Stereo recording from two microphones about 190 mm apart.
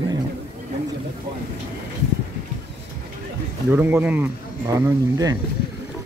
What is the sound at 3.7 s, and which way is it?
Speech, 10° right (ahead or behind).